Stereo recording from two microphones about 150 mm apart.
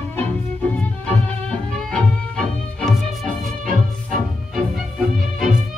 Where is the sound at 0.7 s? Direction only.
10° left (ahead or behind).